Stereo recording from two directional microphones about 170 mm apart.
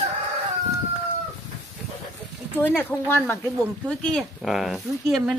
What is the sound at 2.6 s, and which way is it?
Speech, 10° left (ahead or behind).